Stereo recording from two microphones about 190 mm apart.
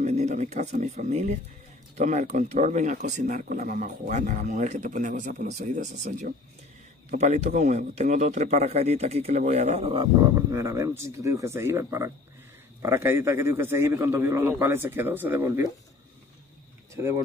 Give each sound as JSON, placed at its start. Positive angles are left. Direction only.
{"t": 0.0, "sound": "speech", "side_deg": -35}
{"t": 10.3, "sound": "a man's voice", "side_deg": -15}